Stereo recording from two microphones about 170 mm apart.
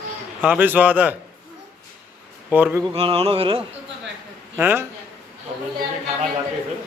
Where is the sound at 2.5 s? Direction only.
10° right (ahead or behind).